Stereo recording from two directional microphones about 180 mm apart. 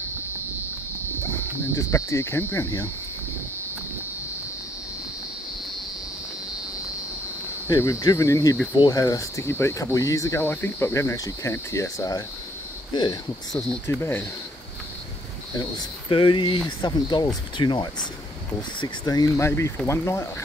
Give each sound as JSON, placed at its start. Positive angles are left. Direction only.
{"t": 1.8, "sound": "speech", "side_deg": 15}
{"t": 7.6, "sound": "speech", "side_deg": 15}
{"t": 13.5, "sound": "speech", "side_deg": 0}
{"t": 13.8, "sound": "speech", "side_deg": 15}
{"t": 16.1, "sound": "speech", "side_deg": 30}